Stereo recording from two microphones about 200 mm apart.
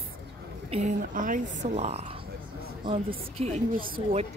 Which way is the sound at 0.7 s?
35° right (ahead or behind).